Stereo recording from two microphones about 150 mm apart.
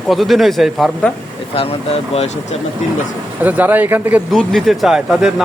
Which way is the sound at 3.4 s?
10° right (ahead or behind).